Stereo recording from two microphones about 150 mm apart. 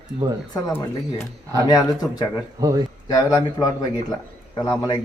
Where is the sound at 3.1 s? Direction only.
25° left (ahead or behind).